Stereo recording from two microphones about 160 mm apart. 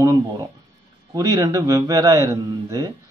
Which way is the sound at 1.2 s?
20° right (ahead or behind).